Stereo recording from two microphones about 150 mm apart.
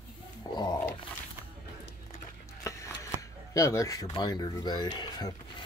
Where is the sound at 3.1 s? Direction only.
20° left (ahead or behind).